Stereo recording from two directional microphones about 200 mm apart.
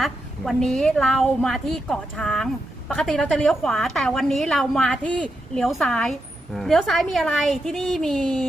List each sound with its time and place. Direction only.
0.0 s a woman's voice: centre (ahead or behind)